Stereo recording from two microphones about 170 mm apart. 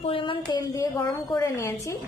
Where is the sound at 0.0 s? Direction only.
30° left (ahead or behind).